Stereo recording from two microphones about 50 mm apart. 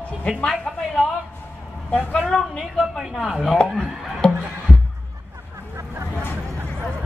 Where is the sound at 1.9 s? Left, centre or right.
Left.